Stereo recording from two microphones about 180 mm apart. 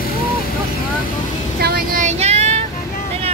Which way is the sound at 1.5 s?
60° right (ahead or behind).